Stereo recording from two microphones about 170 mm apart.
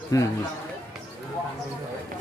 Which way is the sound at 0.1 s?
20° left (ahead or behind).